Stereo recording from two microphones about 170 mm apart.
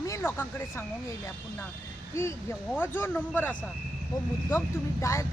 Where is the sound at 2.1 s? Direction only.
15° left (ahead or behind).